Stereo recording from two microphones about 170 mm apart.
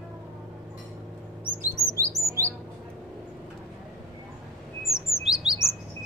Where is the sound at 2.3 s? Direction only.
15° right (ahead or behind).